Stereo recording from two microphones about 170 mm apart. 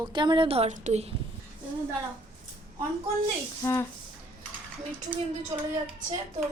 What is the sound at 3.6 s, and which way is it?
Speech, 20° left (ahead or behind).